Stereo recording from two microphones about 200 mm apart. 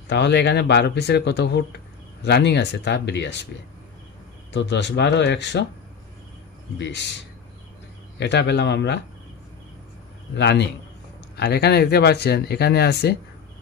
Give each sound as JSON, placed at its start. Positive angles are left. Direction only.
{"t": 0.1, "sound": "speech", "side_deg": 55}
{"t": 4.5, "sound": "speech", "side_deg": 60}
{"t": 6.8, "sound": "speech", "side_deg": 60}
{"t": 8.2, "sound": "speech", "side_deg": 60}
{"t": 10.3, "sound": "speech", "side_deg": 60}